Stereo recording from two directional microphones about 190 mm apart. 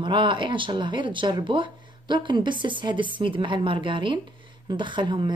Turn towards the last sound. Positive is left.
turn(degrees=-25)  # may be behind; listen again after turning